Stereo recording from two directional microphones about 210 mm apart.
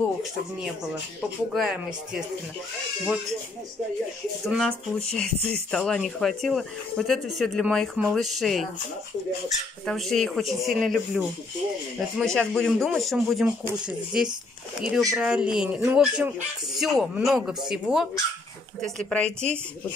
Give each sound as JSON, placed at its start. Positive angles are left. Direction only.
{"t": 1.5, "sound": "speech", "side_deg": 0}
{"t": 4.5, "sound": "speech", "side_deg": 0}
{"t": 9.8, "sound": "speech", "side_deg": 0}